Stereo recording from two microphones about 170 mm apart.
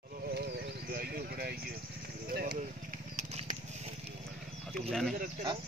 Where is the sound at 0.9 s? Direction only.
60° right (ahead or behind).